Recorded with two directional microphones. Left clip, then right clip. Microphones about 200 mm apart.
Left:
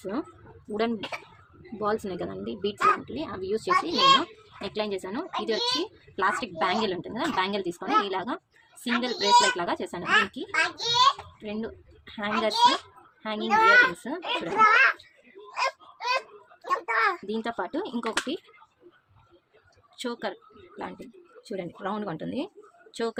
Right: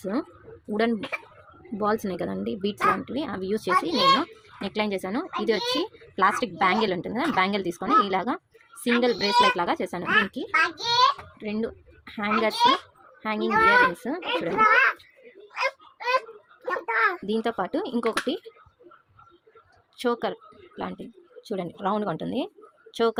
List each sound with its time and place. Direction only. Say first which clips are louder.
0.0 s speech: right 3 dB; 30° right (ahead or behind)
10.0 s a child's voice: even; 15° right (ahead or behind)
10.3 s a child's voice: right 3 dB; 30° right (ahead or behind)
14.5 s a child's voice: even; 10° right (ahead or behind)
16.6 s a sound: right 1 dB; 10° right (ahead or behind)
17.2 s speech: right 4 dB; 30° right (ahead or behind)
20.0 s a woman's voice: right 6 dB; 25° right (ahead or behind)